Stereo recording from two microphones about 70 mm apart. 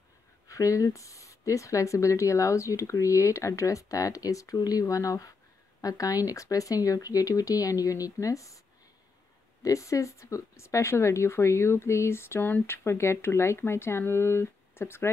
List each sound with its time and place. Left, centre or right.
0.5 s speech: left
9.6 s speech: left